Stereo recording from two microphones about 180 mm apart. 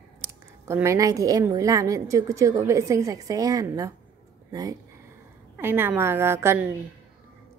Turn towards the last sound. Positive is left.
turn(degrees=-15)  # may be behind; listen again after turning